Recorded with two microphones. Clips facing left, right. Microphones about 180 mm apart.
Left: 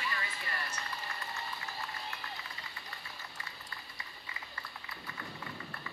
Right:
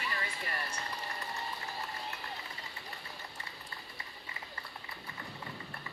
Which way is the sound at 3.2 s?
30° right (ahead or behind).